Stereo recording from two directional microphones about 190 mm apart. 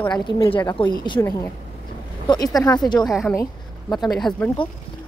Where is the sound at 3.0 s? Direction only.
Centre (ahead or behind).